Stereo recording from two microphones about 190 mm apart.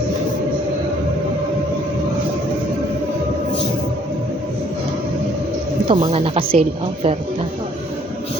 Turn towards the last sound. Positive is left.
turn(degrees=-30)  # may be behind; listen again after turning